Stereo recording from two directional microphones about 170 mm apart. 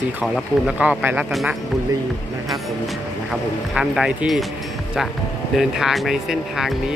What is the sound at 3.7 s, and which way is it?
Speech, 5° right (ahead or behind).